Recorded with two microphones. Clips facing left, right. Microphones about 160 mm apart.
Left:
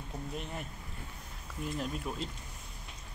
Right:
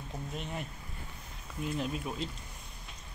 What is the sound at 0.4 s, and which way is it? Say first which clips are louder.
Speech: right 2 dB; centre (ahead or behind).